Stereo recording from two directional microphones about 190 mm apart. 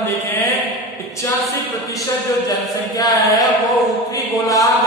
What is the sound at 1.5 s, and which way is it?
Speech, 15° left (ahead or behind).